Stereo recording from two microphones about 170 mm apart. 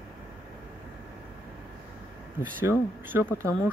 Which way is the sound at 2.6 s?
15° right (ahead or behind).